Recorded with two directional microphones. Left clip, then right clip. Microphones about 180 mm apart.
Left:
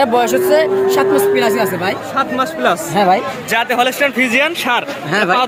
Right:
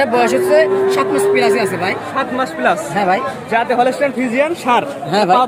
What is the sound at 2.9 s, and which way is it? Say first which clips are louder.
Speech: left 3 dB; 40° left (ahead or behind).